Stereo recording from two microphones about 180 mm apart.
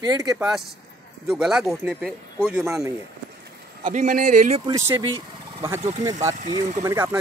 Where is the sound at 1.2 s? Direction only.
5° right (ahead or behind).